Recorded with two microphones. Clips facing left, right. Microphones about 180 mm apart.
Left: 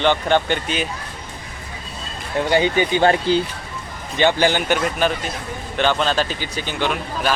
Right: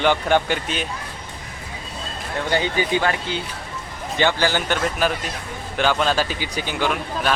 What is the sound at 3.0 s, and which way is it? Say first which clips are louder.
Speech: left 8 dB; 35° left (ahead or behind).